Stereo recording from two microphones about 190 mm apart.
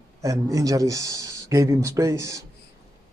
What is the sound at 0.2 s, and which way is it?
A man's voice, 15° right (ahead or behind).